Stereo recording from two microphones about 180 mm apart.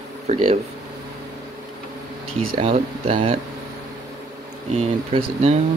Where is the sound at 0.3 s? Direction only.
40° right (ahead or behind).